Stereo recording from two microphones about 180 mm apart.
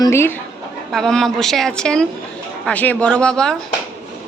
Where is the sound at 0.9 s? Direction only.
5° left (ahead or behind).